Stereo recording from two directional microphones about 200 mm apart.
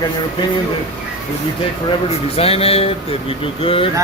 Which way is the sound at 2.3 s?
30° left (ahead or behind).